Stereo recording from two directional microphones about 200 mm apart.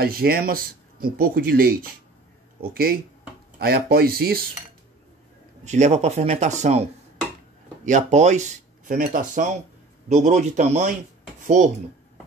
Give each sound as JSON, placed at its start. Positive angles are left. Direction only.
{"t": 0.0, "sound": "speech", "side_deg": -50}
{"t": 5.7, "sound": "speech", "side_deg": -35}